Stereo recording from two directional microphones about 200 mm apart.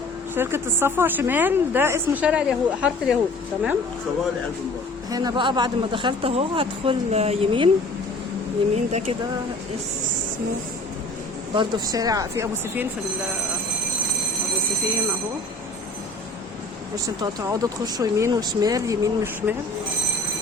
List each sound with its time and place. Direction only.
0.3 s a woman's voice: 10° right (ahead or behind)
5.1 s a man's voice: 20° right (ahead or behind)
8.7 s speech: 35° right (ahead or behind)
11.5 s a woman's voice: 20° right (ahead or behind)
16.9 s a woman's voice: 15° right (ahead or behind)